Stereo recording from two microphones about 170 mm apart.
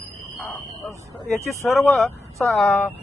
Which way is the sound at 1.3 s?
Centre (ahead or behind).